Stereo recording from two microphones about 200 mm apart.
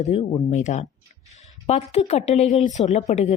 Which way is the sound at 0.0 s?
30° left (ahead or behind).